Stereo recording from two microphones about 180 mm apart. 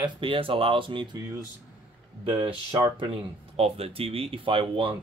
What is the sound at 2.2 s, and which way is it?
Speech, 20° right (ahead or behind).